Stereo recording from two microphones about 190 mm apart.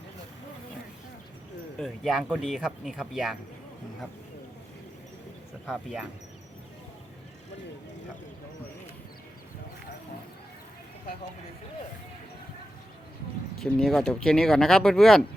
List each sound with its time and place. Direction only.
1.8 s speech: centre (ahead or behind)
5.6 s speech: centre (ahead or behind)
13.6 s speech: centre (ahead or behind)